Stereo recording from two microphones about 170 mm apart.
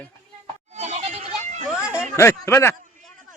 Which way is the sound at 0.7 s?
45° right (ahead or behind).